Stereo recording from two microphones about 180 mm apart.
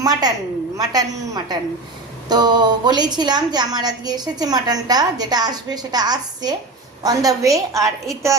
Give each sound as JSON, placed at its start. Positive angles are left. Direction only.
{"t": 0.0, "sound": "a woman's voice", "side_deg": -20}